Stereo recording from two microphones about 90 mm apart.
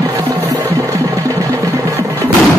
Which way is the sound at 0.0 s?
30° right (ahead or behind).